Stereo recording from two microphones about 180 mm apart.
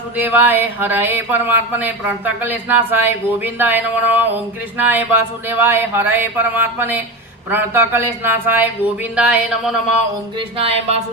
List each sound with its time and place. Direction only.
0.2 s speech: 10° right (ahead or behind)
10.6 s music: 35° right (ahead or behind)